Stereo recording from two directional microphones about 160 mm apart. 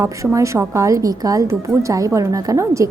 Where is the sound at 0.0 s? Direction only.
20° right (ahead or behind).